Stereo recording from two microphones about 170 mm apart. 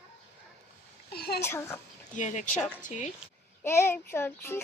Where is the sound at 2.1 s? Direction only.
45° left (ahead or behind).